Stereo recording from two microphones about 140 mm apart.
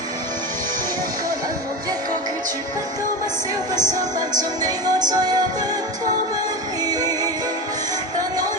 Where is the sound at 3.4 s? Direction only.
25° right (ahead or behind).